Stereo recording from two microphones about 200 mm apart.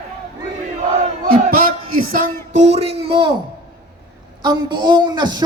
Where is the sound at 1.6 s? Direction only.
45° right (ahead or behind); by 3.3 s 25° right (ahead or behind).